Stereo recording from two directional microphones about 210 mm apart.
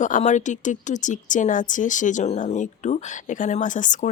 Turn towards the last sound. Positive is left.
turn(degrees=35)  # may be behind; listen again after turning